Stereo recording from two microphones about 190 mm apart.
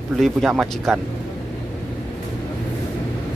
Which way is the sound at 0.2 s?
Centre (ahead or behind).